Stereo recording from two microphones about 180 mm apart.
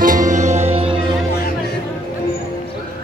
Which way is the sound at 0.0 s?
45° right (ahead or behind).